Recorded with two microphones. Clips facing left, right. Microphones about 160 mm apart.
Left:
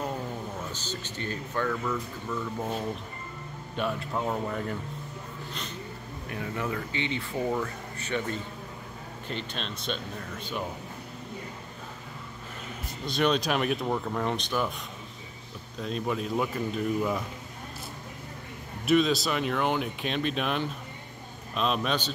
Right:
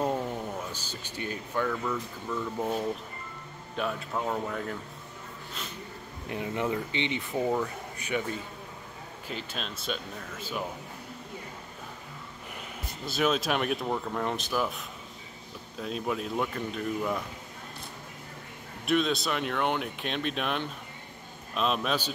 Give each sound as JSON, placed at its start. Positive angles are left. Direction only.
{"t": 0.7, "sound": "speech", "side_deg": -10}
{"t": 6.2, "sound": "speech", "side_deg": -20}
{"t": 13.0, "sound": "speech", "side_deg": -5}
{"t": 15.8, "sound": "speech", "side_deg": 0}
{"t": 18.9, "sound": "speech", "side_deg": 0}